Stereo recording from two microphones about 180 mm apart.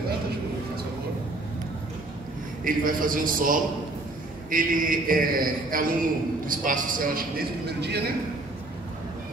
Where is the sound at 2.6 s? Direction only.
50° right (ahead or behind); by 8.0 s 65° right (ahead or behind).